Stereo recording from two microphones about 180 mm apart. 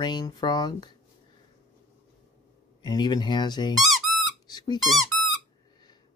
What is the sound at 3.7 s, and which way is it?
Squeak, centre (ahead or behind).